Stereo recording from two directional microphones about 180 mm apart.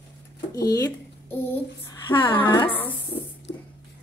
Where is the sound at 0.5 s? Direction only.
20° left (ahead or behind).